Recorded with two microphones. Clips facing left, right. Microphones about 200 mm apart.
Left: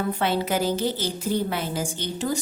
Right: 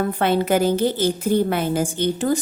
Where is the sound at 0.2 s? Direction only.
55° right (ahead or behind).